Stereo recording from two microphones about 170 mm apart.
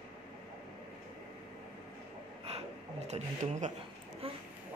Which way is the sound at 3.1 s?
45° right (ahead or behind).